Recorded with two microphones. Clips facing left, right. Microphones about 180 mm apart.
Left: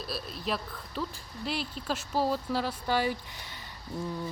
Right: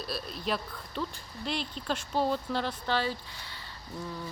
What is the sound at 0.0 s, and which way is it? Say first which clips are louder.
Speech: right 1 dB; centre (ahead or behind).